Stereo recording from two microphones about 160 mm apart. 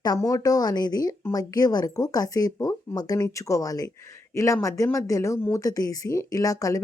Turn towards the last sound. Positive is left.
turn(degrees=20)  # may be behind; listen again after turning